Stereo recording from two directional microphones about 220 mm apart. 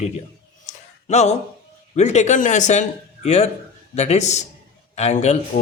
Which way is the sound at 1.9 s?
30° left (ahead or behind).